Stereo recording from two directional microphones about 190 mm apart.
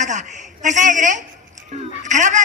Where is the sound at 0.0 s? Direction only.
40° right (ahead or behind).